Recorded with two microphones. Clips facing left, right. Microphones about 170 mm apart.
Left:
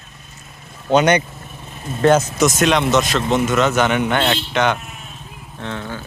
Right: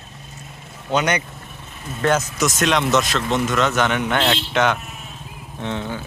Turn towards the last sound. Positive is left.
turn(degrees=-15)  # may be behind; listen again after turning